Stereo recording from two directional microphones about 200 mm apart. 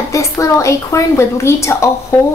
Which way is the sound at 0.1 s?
15° left (ahead or behind).